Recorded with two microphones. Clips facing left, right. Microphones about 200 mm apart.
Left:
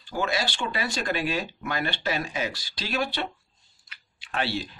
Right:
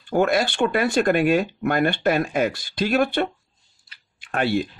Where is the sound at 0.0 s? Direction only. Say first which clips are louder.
Right 9 dB; 55° right (ahead or behind).